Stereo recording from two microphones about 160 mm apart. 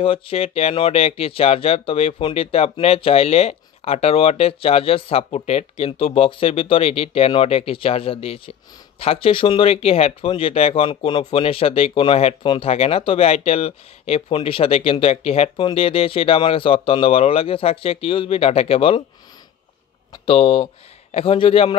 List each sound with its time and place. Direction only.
0.0 s speech: 35° left (ahead or behind)
20.2 s speech: 35° left (ahead or behind)